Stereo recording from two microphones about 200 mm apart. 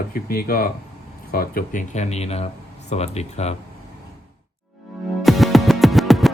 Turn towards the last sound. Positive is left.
turn(degrees=0)  # may be behind; listen again after turning